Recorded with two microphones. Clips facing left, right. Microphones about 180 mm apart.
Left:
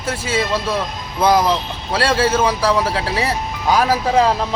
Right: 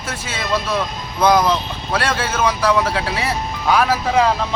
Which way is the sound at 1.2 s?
10° left (ahead or behind).